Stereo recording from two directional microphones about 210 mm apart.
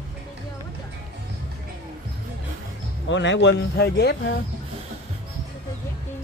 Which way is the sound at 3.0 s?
60° left (ahead or behind).